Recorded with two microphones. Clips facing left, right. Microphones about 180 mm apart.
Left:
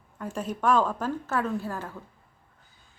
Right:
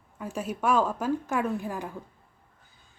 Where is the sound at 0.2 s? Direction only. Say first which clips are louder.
Even; 10° right (ahead or behind).